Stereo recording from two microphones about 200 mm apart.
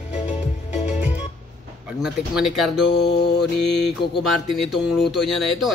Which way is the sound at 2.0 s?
5° right (ahead or behind).